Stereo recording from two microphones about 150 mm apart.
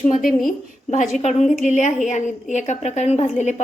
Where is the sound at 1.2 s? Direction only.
50° left (ahead or behind).